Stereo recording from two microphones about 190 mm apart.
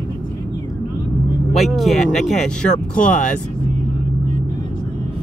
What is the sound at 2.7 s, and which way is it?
Speech, 45° left (ahead or behind).